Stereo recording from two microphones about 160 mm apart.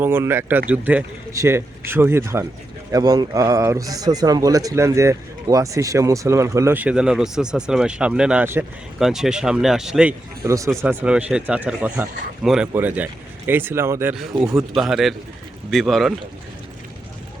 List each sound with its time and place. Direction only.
0.0 s speech: 15° right (ahead or behind)
10.4 s speech: 20° right (ahead or behind)
10.8 s speech: 10° right (ahead or behind)
14.2 s speech: 5° right (ahead or behind)